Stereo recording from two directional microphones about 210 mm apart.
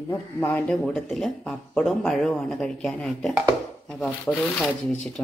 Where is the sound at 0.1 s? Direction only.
10° left (ahead or behind).